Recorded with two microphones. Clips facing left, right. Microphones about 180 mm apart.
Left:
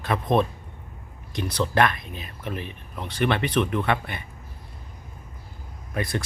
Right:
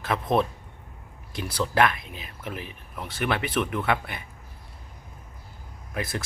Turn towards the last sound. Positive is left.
turn(degrees=-5)  # may be behind; listen again after turning